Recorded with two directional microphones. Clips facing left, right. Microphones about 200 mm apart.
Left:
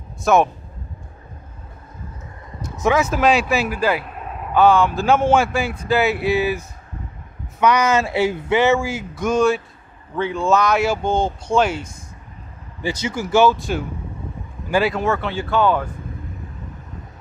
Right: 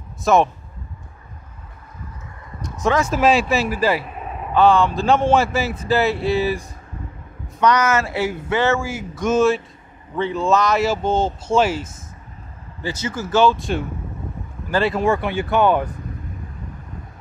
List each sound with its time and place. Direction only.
0.2 s a man's voice: centre (ahead or behind)
2.7 s speech: 5° left (ahead or behind)
7.6 s speech: 10° left (ahead or behind)
9.2 s speech: centre (ahead or behind)
12.8 s speech: 15° left (ahead or behind)
15.0 s speech: 15° right (ahead or behind)